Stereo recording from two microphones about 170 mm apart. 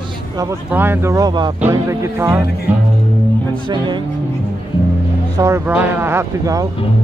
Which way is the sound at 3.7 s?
25° right (ahead or behind).